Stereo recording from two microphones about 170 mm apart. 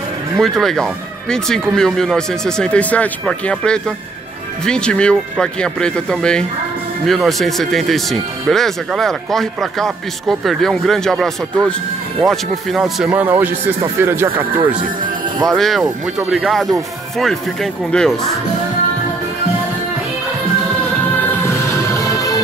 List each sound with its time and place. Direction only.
0.4 s speech: 5° left (ahead or behind); by 14.6 s 15° right (ahead or behind)
15.4 s speech: centre (ahead or behind)
21.5 s music: 15° left (ahead or behind)